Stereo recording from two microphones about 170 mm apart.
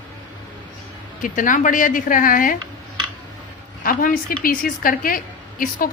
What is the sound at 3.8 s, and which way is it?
A woman's voice, 55° left (ahead or behind).